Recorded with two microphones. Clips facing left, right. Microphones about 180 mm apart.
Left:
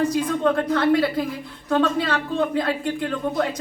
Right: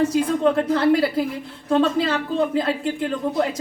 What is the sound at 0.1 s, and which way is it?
Speech, 30° right (ahead or behind).